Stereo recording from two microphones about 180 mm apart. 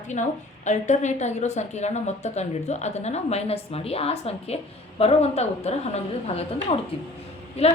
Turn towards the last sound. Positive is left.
turn(degrees=35)  # may be behind; listen again after turning